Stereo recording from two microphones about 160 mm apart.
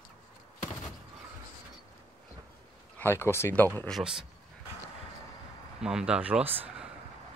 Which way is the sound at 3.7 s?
5° left (ahead or behind).